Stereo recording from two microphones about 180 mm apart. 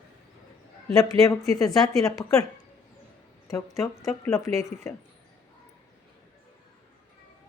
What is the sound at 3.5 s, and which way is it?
Speech, 15° left (ahead or behind).